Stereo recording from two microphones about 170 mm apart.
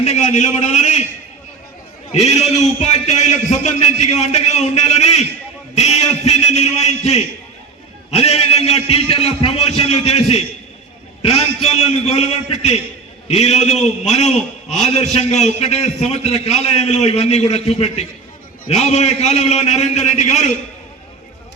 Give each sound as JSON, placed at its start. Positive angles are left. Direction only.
{"t": 0.0, "sound": "a man's voice", "side_deg": 40}
{"t": 2.1, "sound": "a man's voice", "side_deg": 40}